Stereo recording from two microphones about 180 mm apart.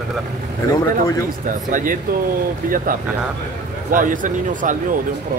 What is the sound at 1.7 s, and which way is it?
Speech, 50° right (ahead or behind).